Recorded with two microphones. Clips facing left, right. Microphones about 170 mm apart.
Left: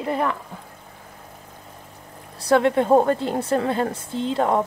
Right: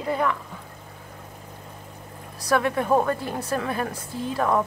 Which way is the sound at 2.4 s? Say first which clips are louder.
Left 5 dB; 25° left (ahead or behind).